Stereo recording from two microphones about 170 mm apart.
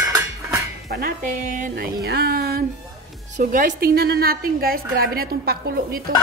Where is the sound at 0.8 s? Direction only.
65° right (ahead or behind).